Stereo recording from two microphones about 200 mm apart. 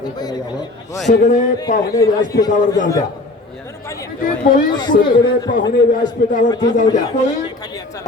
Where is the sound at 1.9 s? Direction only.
15° left (ahead or behind).